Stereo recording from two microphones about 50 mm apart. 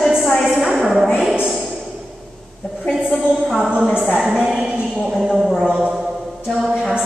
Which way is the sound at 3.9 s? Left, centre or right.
Right.